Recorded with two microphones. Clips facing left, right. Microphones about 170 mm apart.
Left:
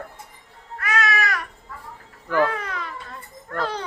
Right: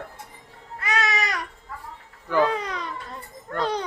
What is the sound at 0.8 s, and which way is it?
Babbling, 25° right (ahead or behind).